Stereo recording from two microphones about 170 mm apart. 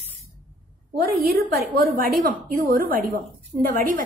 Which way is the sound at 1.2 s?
65° right (ahead or behind).